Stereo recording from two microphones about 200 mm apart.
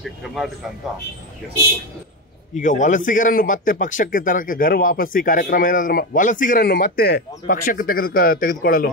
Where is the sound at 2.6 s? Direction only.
40° left (ahead or behind).